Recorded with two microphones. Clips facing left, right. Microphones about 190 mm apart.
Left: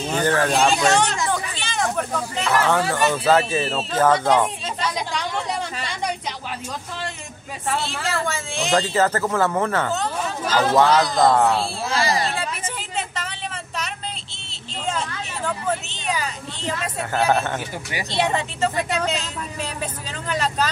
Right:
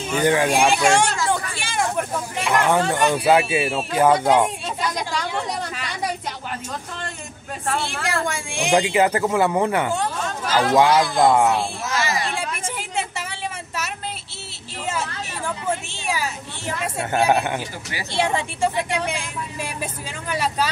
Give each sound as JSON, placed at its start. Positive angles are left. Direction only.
{"t": 0.2, "sound": "speech", "side_deg": -15}
{"t": 1.3, "sound": "a sound", "side_deg": -10}
{"t": 2.3, "sound": "speech", "side_deg": -15}
{"t": 4.8, "sound": "chatter", "side_deg": 0}
{"t": 8.3, "sound": "speech", "side_deg": -15}
{"t": 11.9, "sound": "a sound", "side_deg": 35}
{"t": 12.3, "sound": "vehicle", "side_deg": -10}
{"t": 14.9, "sound": "a sound", "side_deg": -10}
{"t": 18.1, "sound": "speech", "side_deg": -10}